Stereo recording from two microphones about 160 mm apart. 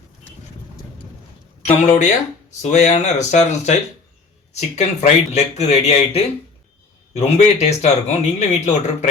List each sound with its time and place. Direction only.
1.6 s speech: 50° left (ahead or behind)